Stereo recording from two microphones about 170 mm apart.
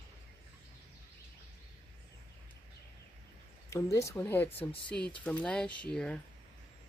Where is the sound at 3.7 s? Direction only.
15° left (ahead or behind).